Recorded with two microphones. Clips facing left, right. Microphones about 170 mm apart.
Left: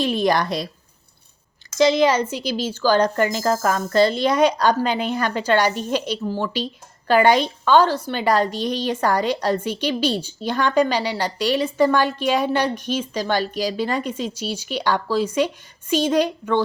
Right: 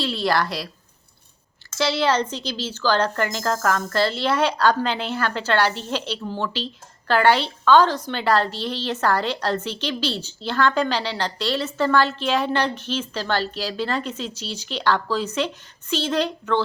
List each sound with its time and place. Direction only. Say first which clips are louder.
0.0 s a woman's voice: left 3 dB; 15° left (ahead or behind)
1.8 s a woman's voice: left 5 dB; 15° left (ahead or behind)